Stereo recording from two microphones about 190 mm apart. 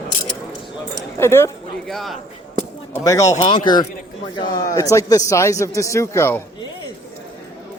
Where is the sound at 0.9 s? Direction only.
15° left (ahead or behind).